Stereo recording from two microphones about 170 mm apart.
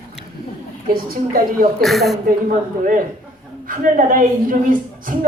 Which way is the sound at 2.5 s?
50° right (ahead or behind).